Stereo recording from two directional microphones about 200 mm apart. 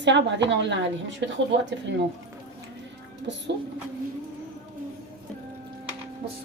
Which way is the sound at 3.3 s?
60° right (ahead or behind).